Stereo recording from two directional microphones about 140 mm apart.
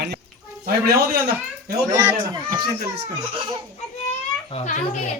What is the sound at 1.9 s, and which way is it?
Speech, 25° right (ahead or behind).